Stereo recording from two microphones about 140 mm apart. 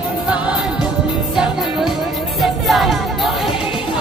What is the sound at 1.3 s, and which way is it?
Music, centre (ahead or behind).